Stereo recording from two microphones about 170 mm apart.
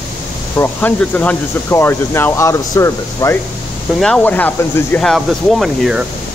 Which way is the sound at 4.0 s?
5° left (ahead or behind).